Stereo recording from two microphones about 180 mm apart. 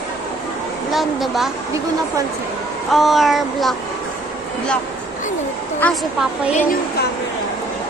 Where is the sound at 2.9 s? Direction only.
Centre (ahead or behind).